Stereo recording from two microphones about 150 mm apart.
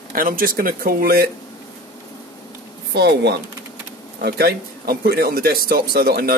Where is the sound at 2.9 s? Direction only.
90° right.